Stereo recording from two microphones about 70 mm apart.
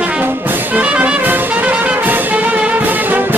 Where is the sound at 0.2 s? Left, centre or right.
Right.